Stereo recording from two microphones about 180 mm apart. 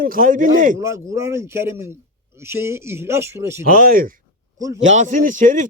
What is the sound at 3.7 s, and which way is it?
A man's voice, 50° right (ahead or behind).